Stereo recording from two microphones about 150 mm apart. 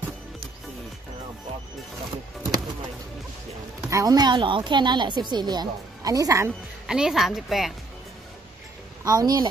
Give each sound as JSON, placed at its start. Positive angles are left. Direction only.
{"t": 3.9, "sound": "speech", "side_deg": -25}
{"t": 6.9, "sound": "speech", "side_deg": -5}
{"t": 9.0, "sound": "speech", "side_deg": -25}